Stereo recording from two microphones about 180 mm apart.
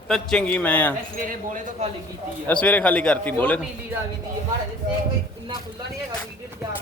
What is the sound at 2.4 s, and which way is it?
A man's voice, 10° left (ahead or behind).